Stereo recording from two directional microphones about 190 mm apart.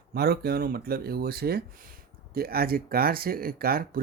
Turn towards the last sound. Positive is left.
turn(degrees=-50)  # may be behind; listen again after turning